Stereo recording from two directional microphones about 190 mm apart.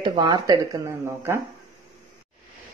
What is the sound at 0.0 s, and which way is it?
Speech, 25° right (ahead or behind).